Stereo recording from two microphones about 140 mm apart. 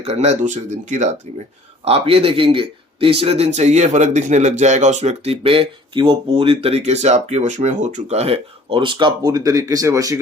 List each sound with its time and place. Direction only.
0.0 s speech: 50° right (ahead or behind)
1.8 s speech: 45° right (ahead or behind); by 10.2 s 25° right (ahead or behind)